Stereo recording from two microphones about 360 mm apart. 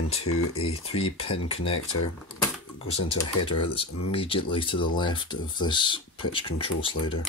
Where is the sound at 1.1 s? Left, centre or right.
Centre.